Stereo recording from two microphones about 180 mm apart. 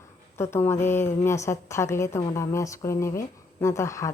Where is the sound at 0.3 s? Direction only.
15° left (ahead or behind).